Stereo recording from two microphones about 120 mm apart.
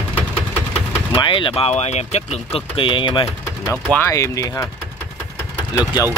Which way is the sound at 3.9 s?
25° left (ahead or behind).